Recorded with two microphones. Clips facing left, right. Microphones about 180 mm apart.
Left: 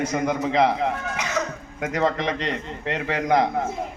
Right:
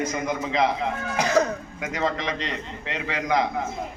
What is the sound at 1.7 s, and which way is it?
A man's voice, 55° left (ahead or behind).